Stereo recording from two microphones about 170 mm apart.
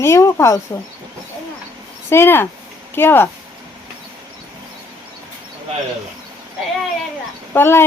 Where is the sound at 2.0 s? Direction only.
15° left (ahead or behind).